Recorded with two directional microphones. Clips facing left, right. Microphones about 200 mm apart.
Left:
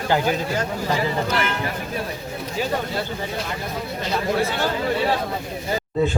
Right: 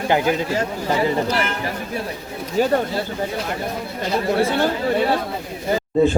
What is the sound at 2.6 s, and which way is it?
Speech, 50° right (ahead or behind).